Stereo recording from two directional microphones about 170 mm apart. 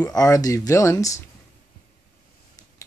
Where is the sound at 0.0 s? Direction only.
20° left (ahead or behind).